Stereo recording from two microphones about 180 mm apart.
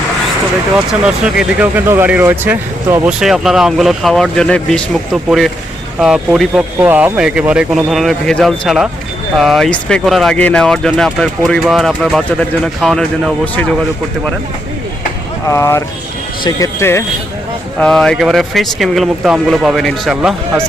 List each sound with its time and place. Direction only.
0.9 s speech: 5° right (ahead or behind)
15.4 s speech: 15° left (ahead or behind)
17.7 s speech: 5° left (ahead or behind)